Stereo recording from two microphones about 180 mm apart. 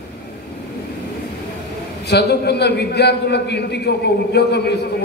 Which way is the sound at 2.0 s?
65° left (ahead or behind).